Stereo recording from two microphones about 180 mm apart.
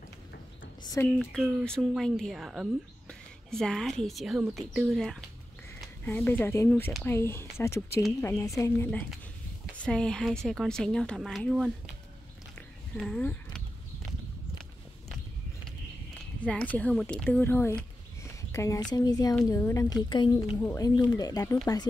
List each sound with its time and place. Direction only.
1.1 s speech: centre (ahead or behind)
12.9 s speech: 5° left (ahead or behind)
16.3 s speech: 5° left (ahead or behind)